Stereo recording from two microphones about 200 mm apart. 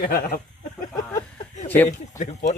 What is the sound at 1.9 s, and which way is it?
Speech, 40° left (ahead or behind).